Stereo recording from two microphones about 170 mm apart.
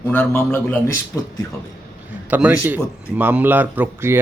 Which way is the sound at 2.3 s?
10° right (ahead or behind).